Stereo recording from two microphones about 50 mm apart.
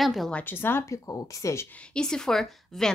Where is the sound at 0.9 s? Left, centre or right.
Left.